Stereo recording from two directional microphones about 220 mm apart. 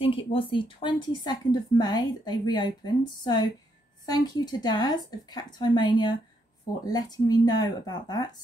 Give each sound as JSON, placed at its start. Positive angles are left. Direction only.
{"t": 0.3, "sound": "a woman's voice", "side_deg": 25}